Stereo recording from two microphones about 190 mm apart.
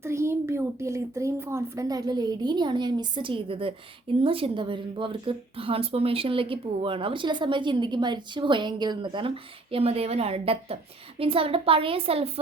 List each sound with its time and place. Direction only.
0.0 s a woman's voice: 15° right (ahead or behind); by 12.3 s 30° right (ahead or behind)